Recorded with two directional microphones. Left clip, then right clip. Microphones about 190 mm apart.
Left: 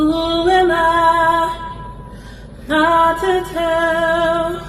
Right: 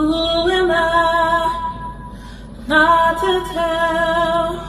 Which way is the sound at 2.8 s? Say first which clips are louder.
Even; 25° left (ahead or behind).